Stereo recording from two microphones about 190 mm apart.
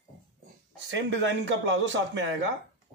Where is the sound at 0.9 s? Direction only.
75° right (ahead or behind).